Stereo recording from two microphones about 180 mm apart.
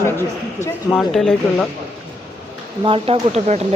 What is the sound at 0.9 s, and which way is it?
Speech, centre (ahead or behind).